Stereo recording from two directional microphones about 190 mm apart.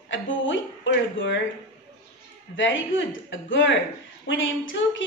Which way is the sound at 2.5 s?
80° left.